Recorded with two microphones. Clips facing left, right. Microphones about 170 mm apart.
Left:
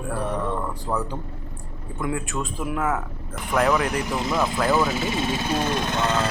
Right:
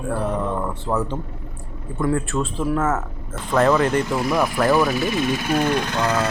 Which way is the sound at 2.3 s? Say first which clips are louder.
Right 6 dB; 35° right (ahead or behind).